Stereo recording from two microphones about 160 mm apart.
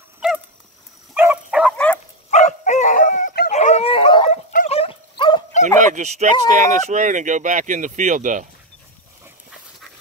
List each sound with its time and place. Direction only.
1.1 s dog: 10° right (ahead or behind)
1.7 s dog: 5° left (ahead or behind)
2.3 s dog: 50° left (ahead or behind)
4.6 s a sound: 35° left (ahead or behind)
5.8 s speech: 50° right (ahead or behind)